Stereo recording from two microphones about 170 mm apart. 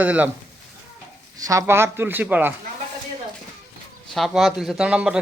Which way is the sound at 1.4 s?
20° right (ahead or behind).